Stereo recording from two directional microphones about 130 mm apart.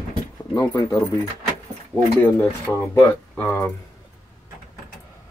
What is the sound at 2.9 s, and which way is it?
Speech, 20° left (ahead or behind).